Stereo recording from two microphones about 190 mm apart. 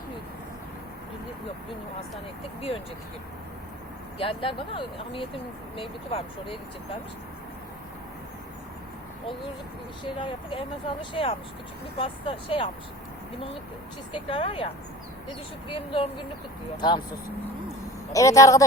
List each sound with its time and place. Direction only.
2.6 s speech: 30° left (ahead or behind)
4.2 s speech: 30° left (ahead or behind)
10.0 s speech: 25° left (ahead or behind)
14.1 s speech: 25° left (ahead or behind)
15.7 s speech: 30° left (ahead or behind)
18.1 s speech: 15° left (ahead or behind)